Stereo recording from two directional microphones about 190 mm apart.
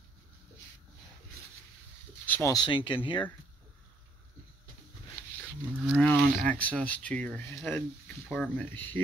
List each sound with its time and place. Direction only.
2.2 s a sound: 10° left (ahead or behind)
2.5 s speech: 25° left (ahead or behind)
5.9 s speech: 5° left (ahead or behind)